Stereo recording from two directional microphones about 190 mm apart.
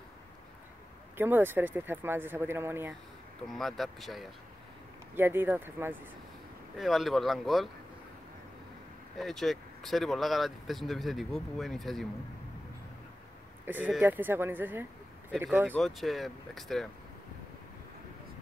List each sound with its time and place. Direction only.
1.1 s speech: 10° right (ahead or behind)
3.5 s speech: centre (ahead or behind)
5.1 s speech: 10° right (ahead or behind)
6.8 s speech: centre (ahead or behind)
9.2 s speech: centre (ahead or behind)
13.7 s speech: 10° right (ahead or behind)